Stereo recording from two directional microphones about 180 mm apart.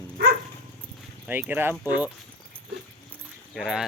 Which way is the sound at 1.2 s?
10° right (ahead or behind).